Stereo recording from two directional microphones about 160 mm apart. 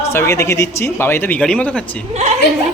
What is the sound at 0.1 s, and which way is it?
Speech, 15° left (ahead or behind).